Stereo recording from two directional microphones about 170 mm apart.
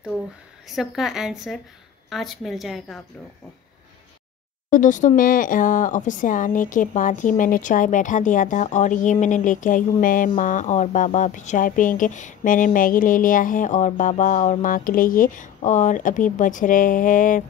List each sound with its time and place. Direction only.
0.7 s a woman's voice: centre (ahead or behind)
4.6 s speech: 50° left (ahead or behind)